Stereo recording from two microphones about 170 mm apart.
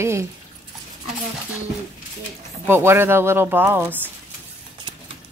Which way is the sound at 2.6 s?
15° right (ahead or behind).